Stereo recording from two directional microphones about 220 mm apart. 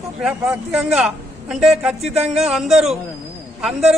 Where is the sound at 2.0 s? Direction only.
30° right (ahead or behind).